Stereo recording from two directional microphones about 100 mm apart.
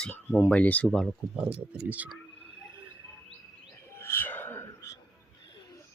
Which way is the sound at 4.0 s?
25° left (ahead or behind).